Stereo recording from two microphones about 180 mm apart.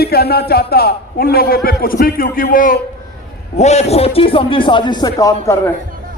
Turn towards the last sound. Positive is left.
turn(degrees=15)  # may be behind; listen again after turning